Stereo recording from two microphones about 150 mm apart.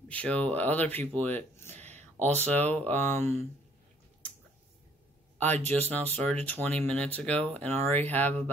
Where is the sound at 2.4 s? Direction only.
10° left (ahead or behind).